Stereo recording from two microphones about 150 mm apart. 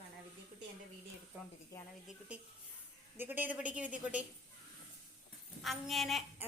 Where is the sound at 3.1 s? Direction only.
15° right (ahead or behind).